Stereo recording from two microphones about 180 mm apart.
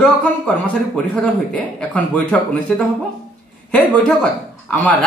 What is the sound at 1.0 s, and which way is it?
A man's voice, 5° left (ahead or behind).